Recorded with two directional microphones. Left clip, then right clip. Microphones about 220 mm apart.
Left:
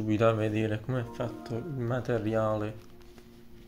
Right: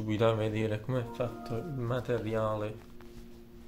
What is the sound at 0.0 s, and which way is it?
Speech, 5° left (ahead or behind).